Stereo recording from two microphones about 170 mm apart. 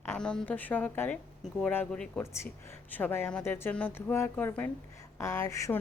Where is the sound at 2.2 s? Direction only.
15° left (ahead or behind).